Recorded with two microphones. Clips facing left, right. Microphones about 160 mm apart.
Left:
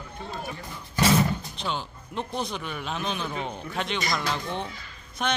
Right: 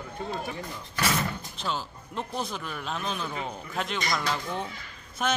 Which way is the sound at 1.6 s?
Centre (ahead or behind).